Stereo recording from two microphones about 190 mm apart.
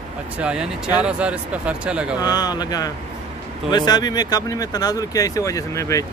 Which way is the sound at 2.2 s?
20° left (ahead or behind).